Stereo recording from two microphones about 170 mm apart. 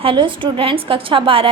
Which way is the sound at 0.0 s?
30° right (ahead or behind).